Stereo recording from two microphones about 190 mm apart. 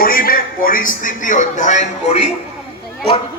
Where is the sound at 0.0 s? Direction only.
50° left (ahead or behind); by 2.3 s 35° left (ahead or behind).